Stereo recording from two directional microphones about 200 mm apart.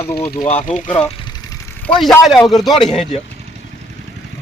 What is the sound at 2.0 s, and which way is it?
Speech, centre (ahead or behind).